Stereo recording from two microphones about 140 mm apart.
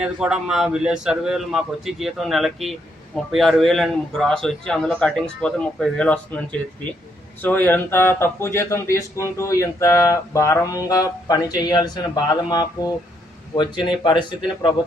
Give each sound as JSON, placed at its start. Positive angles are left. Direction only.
{"t": 0.0, "sound": "a man's voice", "side_deg": -5}